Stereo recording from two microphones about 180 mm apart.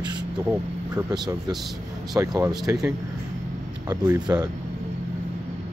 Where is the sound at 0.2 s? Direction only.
10° right (ahead or behind).